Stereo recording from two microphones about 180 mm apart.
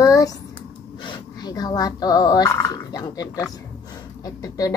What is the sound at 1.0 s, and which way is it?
Speech, 25° left (ahead or behind).